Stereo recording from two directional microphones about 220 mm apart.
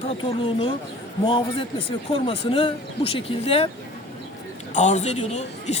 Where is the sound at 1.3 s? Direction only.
25° left (ahead or behind).